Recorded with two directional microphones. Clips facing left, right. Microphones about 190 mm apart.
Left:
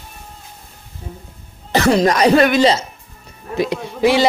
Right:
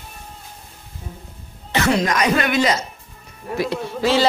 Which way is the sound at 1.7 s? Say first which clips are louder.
Left 5 dB; 35° left (ahead or behind).